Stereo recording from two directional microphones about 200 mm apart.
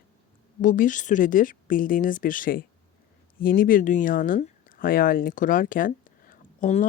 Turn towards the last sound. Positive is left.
turn(degrees=40)  # may be behind; listen again after turning